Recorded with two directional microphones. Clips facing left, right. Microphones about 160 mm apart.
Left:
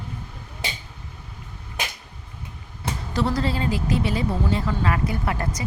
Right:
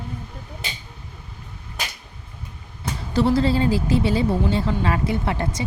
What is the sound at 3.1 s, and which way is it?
A woman's voice, 30° right (ahead or behind).